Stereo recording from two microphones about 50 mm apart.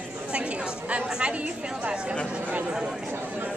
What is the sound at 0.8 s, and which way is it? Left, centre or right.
Speech, right.